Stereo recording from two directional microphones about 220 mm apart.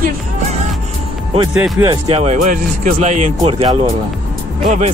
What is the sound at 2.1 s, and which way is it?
Speech, 30° right (ahead or behind).